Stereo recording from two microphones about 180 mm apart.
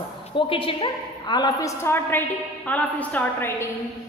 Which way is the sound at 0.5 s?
30° left (ahead or behind).